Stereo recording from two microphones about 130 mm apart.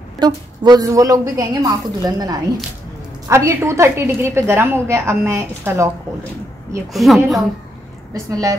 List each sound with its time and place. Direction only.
0.2 s a woman's voice: 30° right (ahead or behind)
6.9 s a woman's voice: centre (ahead or behind)
8.1 s a woman's voice: 25° right (ahead or behind)